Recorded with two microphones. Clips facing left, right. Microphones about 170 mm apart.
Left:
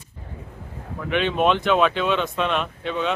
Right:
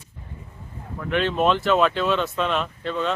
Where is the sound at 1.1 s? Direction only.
Centre (ahead or behind).